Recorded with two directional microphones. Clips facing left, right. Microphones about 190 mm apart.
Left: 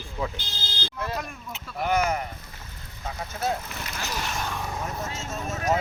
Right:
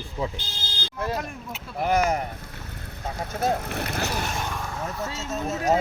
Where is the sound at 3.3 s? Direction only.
50° right (ahead or behind).